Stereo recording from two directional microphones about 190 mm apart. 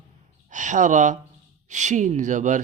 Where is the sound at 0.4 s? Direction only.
40° right (ahead or behind).